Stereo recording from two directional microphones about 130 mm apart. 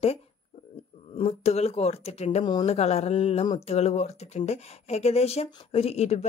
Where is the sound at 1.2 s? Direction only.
55° left (ahead or behind).